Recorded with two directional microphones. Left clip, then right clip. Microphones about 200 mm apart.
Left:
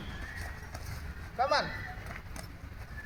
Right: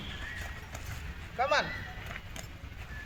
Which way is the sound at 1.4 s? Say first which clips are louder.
Even; centre (ahead or behind).